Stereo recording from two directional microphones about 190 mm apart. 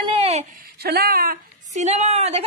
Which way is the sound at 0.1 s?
35° right (ahead or behind).